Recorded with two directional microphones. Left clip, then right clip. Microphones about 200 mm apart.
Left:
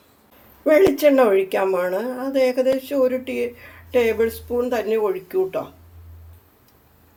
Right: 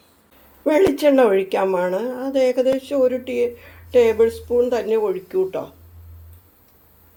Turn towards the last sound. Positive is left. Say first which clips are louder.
# right 1 dB
turn(degrees=-10)  # may be behind; listen again after turning